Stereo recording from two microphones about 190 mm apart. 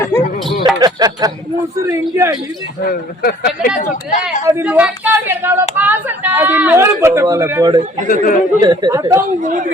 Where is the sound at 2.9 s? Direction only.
55° left (ahead or behind).